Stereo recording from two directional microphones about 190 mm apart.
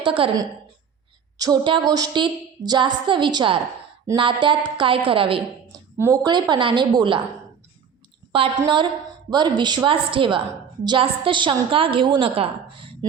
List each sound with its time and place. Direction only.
0.0 s a woman's voice: 25° right (ahead or behind)
8.3 s a woman's voice: 25° right (ahead or behind)